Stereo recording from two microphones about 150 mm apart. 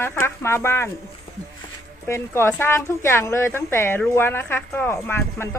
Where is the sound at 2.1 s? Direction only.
15° left (ahead or behind).